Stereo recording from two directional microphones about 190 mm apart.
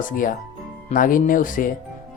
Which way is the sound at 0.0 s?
45° left (ahead or behind).